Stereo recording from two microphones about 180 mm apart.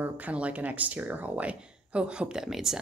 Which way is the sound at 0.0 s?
10° right (ahead or behind).